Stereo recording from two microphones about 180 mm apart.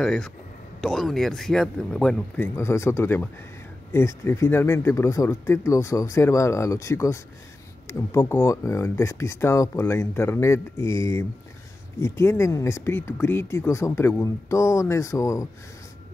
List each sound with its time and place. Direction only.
0.0 s speech: 5° left (ahead or behind)